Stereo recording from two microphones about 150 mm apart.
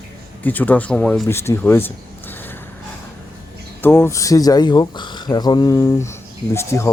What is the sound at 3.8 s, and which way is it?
Speech, 15° left (ahead or behind).